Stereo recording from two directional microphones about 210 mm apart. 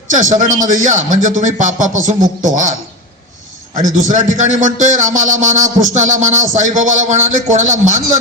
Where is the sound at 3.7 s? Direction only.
35° right (ahead or behind).